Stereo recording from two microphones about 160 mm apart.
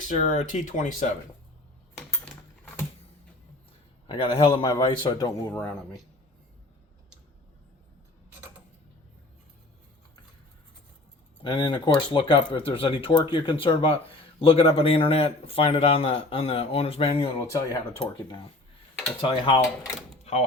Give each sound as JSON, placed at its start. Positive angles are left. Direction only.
{"t": 0.0, "sound": "speech", "side_deg": 50}
{"t": 4.0, "sound": "a man's voice", "side_deg": 30}
{"t": 4.4, "sound": "a man's voice", "side_deg": 20}
{"t": 5.5, "sound": "speech", "side_deg": 10}
{"t": 11.4, "sound": "a man's voice", "side_deg": 30}
{"t": 17.4, "sound": "a man's voice", "side_deg": 20}
{"t": 19.2, "sound": "a man's voice", "side_deg": 30}
{"t": 20.3, "sound": "speech", "side_deg": 45}